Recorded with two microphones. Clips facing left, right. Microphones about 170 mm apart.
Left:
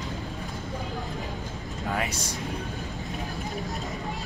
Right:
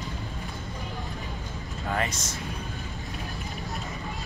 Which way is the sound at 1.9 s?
10° left (ahead or behind).